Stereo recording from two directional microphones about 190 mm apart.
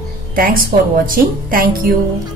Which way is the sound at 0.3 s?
50° right (ahead or behind).